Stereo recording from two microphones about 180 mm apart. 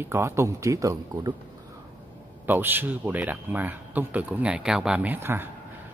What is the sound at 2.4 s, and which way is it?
Speech, 10° right (ahead or behind).